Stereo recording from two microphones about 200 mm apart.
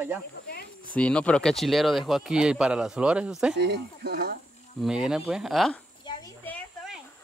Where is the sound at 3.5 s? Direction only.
55° right (ahead or behind).